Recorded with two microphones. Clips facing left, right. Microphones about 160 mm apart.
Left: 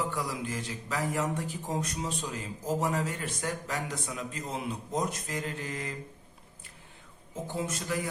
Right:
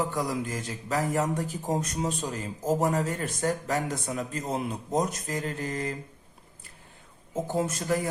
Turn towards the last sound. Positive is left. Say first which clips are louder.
# right 6 dB
turn(degrees=-45)  # may be behind; listen again after turning